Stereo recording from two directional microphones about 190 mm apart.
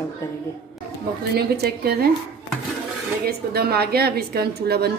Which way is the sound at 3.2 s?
55° right (ahead or behind).